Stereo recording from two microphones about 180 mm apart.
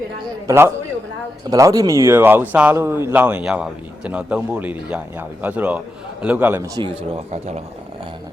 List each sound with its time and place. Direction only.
0.4 s speech: 15° right (ahead or behind)
7.3 s speech: 40° right (ahead or behind)